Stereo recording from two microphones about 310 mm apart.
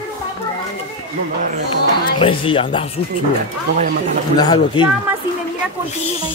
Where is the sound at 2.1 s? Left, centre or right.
Centre.